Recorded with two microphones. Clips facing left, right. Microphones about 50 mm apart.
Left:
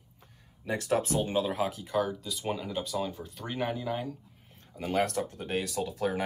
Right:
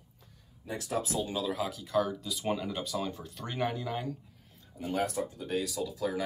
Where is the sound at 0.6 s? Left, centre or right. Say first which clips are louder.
Left 5 dB; left.